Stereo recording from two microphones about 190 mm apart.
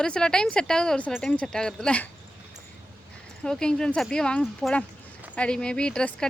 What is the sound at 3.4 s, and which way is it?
Speech, 5° left (ahead or behind).